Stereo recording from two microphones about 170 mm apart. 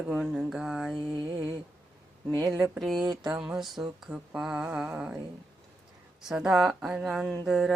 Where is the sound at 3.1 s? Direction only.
25° right (ahead or behind).